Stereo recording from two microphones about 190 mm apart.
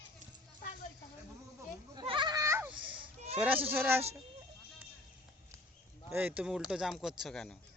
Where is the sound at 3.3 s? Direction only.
10° right (ahead or behind).